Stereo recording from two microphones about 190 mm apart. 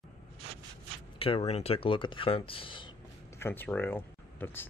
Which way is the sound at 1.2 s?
30° left (ahead or behind).